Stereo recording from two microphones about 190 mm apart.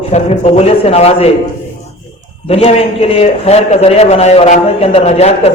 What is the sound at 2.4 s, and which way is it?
A man's voice, 30° left (ahead or behind).